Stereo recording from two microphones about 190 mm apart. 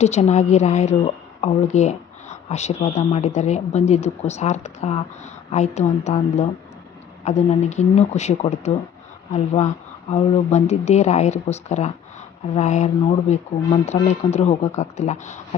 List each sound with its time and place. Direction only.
0.0 s speech: 35° left (ahead or behind)